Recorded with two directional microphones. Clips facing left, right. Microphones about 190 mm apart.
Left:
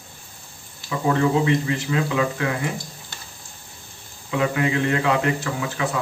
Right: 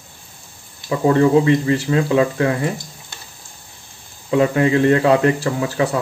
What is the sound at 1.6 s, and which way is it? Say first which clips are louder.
Speech: right 6 dB; 35° right (ahead or behind).